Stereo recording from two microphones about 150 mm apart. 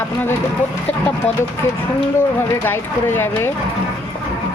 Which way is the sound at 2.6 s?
15° left (ahead or behind).